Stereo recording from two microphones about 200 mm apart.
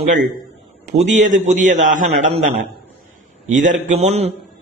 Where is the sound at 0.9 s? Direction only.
35° right (ahead or behind).